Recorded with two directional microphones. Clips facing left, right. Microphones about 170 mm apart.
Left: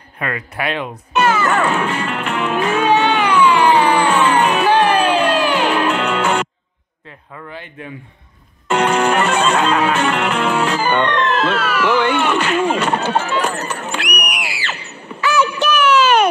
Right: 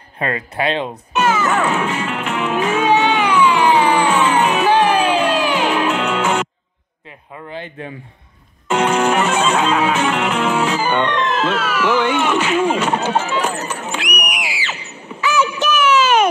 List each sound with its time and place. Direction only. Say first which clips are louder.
0.2 s speech: right 3 dB; 25° right (ahead or behind)
1.1 s music: left 1 dB; 5° right (ahead or behind)
7.3 s speech: right 3 dB; 25° right (ahead or behind)
8.6 s music: even; 5° right (ahead or behind)